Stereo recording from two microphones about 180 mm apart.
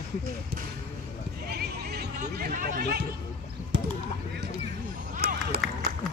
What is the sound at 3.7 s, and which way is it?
Basketball bounce, 70° right (ahead or behind).